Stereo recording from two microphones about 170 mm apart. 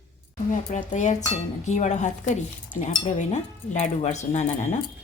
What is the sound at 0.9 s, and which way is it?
A woman's voice, 45° left (ahead or behind).